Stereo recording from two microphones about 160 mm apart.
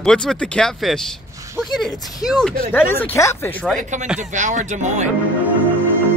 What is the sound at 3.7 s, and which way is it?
Speech, 50° right (ahead or behind).